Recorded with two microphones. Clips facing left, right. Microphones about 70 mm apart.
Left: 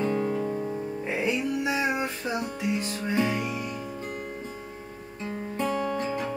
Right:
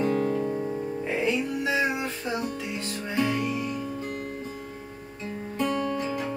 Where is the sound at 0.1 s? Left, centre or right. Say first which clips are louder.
Right 1 dB; centre.